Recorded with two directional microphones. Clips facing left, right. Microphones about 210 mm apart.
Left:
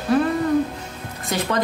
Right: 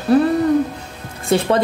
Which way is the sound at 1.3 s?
30° right (ahead or behind).